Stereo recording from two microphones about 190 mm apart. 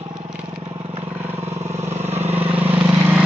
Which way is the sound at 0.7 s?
30° right (ahead or behind).